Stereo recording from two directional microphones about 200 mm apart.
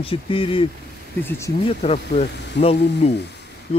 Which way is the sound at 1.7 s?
30° left (ahead or behind).